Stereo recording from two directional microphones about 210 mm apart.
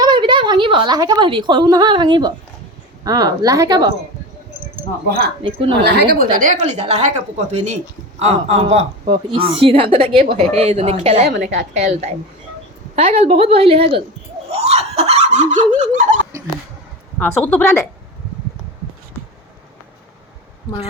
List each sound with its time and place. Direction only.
0.0 s a woman's voice: 20° right (ahead or behind)
5.0 s a woman's voice: 50° right (ahead or behind)
5.4 s a woman's voice: 25° right (ahead or behind)
5.8 s a woman's voice: 50° right (ahead or behind)
6.4 s a woman's voice: 35° right (ahead or behind)
11.3 s a woman's voice: 50° right (ahead or behind)
13.0 s a woman's voice: 30° right (ahead or behind)
14.5 s snicker: 30° right (ahead or behind)
17.2 s a woman's voice: 10° left (ahead or behind)